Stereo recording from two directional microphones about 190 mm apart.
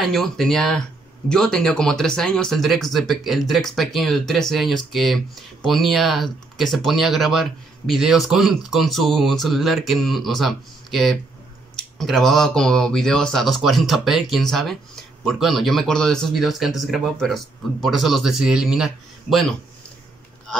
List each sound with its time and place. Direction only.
0.0 s speech: centre (ahead or behind)